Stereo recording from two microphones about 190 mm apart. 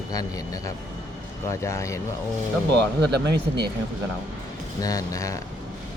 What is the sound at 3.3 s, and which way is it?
Speech, 60° right (ahead or behind).